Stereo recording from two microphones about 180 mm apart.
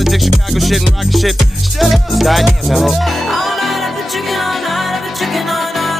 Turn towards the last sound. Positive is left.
turn(degrees=0)  # may be behind; listen again after turning